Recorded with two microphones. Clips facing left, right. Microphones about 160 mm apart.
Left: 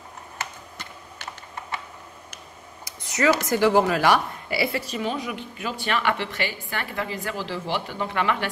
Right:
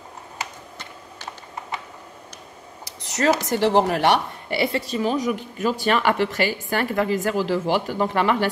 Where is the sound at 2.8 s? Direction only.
75° right (ahead or behind).